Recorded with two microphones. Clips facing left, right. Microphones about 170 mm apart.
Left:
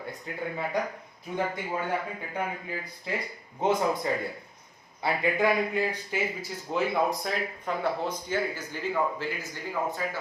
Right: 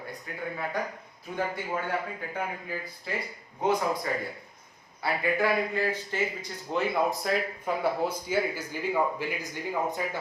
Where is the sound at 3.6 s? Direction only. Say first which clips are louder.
Left 1 dB; 25° left (ahead or behind); by 9.4 s 15° right (ahead or behind).